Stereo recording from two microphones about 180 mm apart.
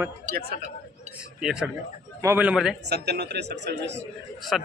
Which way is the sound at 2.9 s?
65° right (ahead or behind).